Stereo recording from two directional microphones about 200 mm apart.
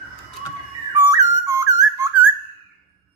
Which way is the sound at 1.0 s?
15° right (ahead or behind).